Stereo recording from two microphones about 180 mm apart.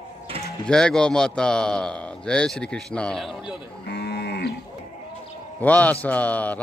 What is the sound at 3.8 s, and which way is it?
Livestock, 70° left (ahead or behind).